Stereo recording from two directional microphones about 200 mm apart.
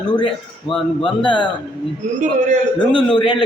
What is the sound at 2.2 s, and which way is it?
Speech, 35° right (ahead or behind).